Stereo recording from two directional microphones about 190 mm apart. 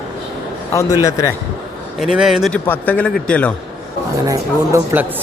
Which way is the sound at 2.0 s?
Centre (ahead or behind).